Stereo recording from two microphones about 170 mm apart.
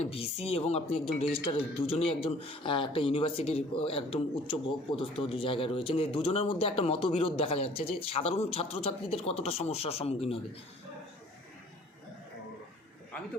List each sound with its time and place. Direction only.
0.0 s speech: 35° left (ahead or behind)